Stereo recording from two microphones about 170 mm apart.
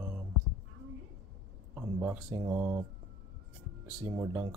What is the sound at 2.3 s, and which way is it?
Speech, 20° right (ahead or behind).